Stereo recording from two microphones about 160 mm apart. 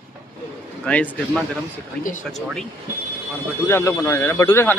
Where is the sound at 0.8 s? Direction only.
10° left (ahead or behind).